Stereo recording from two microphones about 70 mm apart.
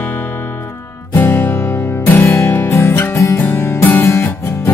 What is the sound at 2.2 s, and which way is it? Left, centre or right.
Music, left.